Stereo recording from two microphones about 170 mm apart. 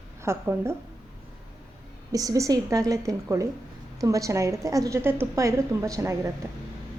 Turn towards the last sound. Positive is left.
turn(degrees=-15)  # may be behind; listen again after turning